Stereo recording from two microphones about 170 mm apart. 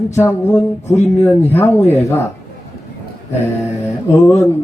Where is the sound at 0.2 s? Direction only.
15° left (ahead or behind).